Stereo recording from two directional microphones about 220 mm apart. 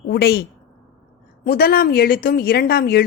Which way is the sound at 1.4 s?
45° left (ahead or behind).